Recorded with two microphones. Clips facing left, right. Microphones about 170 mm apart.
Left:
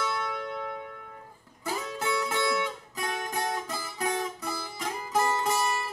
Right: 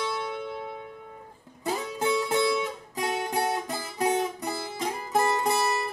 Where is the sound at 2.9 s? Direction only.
25° right (ahead or behind).